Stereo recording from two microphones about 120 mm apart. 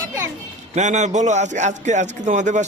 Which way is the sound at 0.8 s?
75° right (ahead or behind).